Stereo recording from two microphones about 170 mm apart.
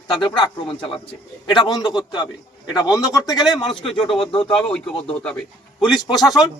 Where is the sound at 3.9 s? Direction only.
Centre (ahead or behind).